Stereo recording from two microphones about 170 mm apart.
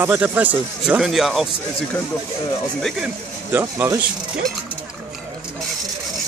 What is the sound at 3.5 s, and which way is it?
Speech, 15° right (ahead or behind).